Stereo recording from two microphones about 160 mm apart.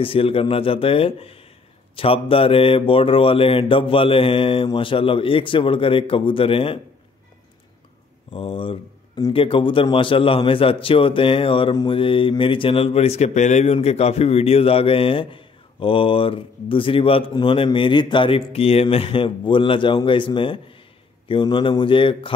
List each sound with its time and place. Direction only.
0.0 s speech: 35° left (ahead or behind)
8.3 s speech: 35° left (ahead or behind)